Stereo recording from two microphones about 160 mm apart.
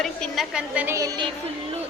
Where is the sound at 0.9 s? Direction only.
25° right (ahead or behind).